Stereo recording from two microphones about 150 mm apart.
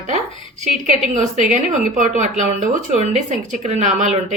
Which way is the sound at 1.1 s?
55° right (ahead or behind).